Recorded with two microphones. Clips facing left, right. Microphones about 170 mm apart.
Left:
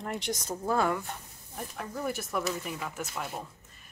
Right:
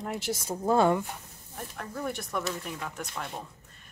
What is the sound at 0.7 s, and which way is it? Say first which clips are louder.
Speech: right 5 dB; 25° right (ahead or behind).